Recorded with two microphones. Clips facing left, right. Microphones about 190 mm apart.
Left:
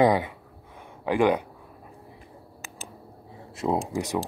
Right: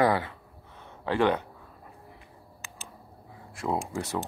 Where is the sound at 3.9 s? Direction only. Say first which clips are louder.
Left 4 dB; 15° left (ahead or behind).